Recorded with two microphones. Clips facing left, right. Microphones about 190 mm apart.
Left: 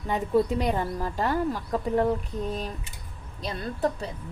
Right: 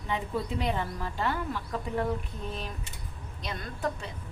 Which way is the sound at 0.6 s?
40° left (ahead or behind).